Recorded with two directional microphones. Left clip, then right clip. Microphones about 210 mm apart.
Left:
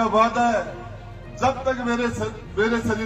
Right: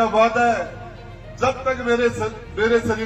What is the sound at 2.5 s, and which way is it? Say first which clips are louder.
Speech: right 4 dB; 40° right (ahead or behind).